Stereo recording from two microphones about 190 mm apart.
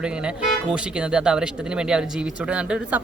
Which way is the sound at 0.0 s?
5° right (ahead or behind).